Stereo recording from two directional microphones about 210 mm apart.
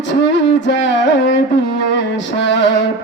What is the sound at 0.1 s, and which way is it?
Music, 55° left (ahead or behind).